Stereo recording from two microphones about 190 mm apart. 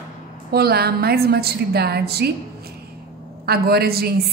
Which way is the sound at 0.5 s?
55° right (ahead or behind).